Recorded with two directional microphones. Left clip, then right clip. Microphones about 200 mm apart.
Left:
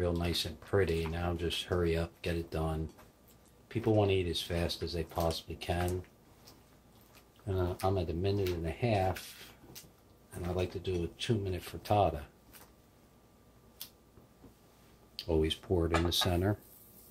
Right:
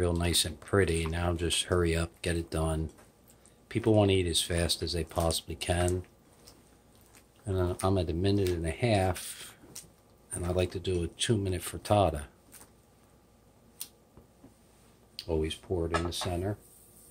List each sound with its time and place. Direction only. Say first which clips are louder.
0.0 s speech: right 4 dB; 50° right (ahead or behind)
7.4 s speech: right 3 dB; 30° right (ahead or behind)
7.8 s speech: right 3 dB; 40° right (ahead or behind)
10.4 s speech: right 5 dB; 45° right (ahead or behind)
15.1 s speech: left 1 dB; centre (ahead or behind); by 16.5 s 20° left (ahead or behind)